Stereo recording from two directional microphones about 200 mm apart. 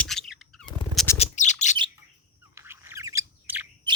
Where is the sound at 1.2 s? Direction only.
35° left (ahead or behind).